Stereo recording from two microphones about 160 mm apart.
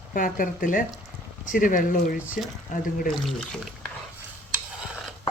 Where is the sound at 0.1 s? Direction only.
60° left (ahead or behind).